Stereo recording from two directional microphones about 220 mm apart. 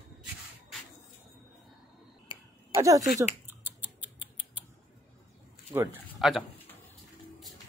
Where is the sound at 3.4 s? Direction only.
10° right (ahead or behind).